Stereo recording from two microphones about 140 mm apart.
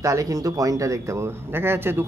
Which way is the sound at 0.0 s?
25° right (ahead or behind).